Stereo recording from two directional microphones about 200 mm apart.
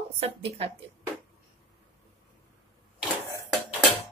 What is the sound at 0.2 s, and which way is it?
Speech, 30° right (ahead or behind).